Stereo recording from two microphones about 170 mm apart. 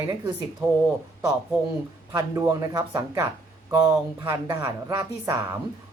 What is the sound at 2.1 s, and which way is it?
Speech, 20° right (ahead or behind).